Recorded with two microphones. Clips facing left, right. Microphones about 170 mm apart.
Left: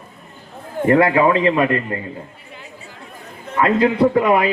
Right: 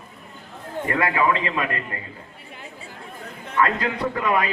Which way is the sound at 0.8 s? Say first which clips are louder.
Left 8 dB; 30° left (ahead or behind).